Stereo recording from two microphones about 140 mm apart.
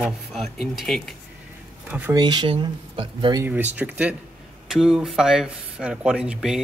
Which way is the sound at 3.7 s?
10° right (ahead or behind).